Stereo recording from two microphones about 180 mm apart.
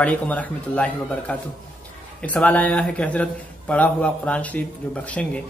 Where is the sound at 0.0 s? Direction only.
10° left (ahead or behind).